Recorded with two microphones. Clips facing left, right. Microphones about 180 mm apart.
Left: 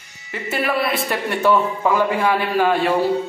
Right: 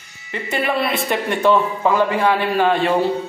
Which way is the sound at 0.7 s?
25° right (ahead or behind).